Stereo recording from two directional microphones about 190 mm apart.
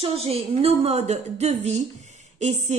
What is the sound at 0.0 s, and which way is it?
A woman's voice, 30° right (ahead or behind).